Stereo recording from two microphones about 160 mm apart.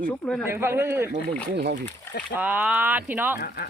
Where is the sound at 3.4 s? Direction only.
85° left.